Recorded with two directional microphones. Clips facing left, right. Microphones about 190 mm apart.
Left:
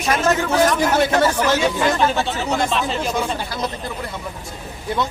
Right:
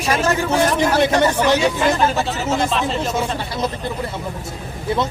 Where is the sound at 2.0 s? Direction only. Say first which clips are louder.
Even; centre (ahead or behind).